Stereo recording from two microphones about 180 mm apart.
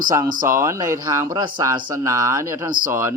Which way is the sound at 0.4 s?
15° right (ahead or behind).